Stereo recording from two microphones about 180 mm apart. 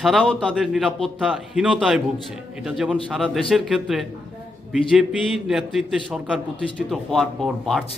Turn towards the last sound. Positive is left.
turn(degrees=0)  # may be behind; listen again after turning